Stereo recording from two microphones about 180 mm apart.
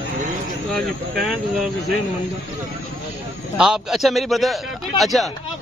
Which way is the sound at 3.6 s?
5° right (ahead or behind).